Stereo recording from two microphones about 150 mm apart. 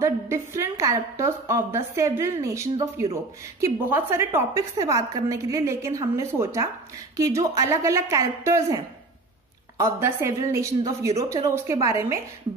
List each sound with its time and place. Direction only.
0.0 s a woman's voice: 20° right (ahead or behind)
9.8 s a woman's voice: 15° right (ahead or behind)